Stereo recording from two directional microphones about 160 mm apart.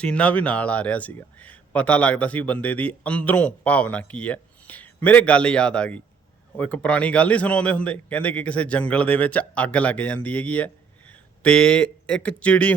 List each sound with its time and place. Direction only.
0.0 s speech: 10° left (ahead or behind)